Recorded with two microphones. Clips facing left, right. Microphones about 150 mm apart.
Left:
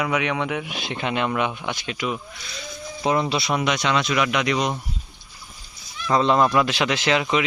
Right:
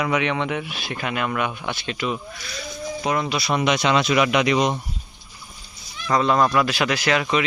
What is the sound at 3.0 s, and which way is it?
Speech, 25° left (ahead or behind).